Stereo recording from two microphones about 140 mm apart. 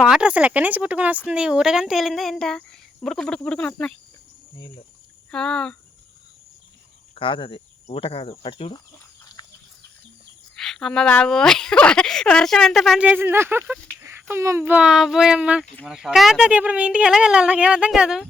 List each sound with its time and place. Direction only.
0.0 s speech: 5° right (ahead or behind)
5.3 s speech: 5° left (ahead or behind)
7.2 s speech: 35° left (ahead or behind)
10.5 s speech: 5° left (ahead or behind)
13.0 s a woman's voice: 10° right (ahead or behind)